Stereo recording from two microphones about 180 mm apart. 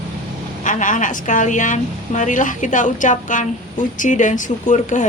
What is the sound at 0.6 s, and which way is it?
Speech, 45° left (ahead or behind).